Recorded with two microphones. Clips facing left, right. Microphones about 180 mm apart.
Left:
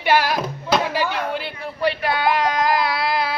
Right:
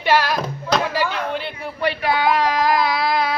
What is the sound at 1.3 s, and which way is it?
A man's voice, centre (ahead or behind).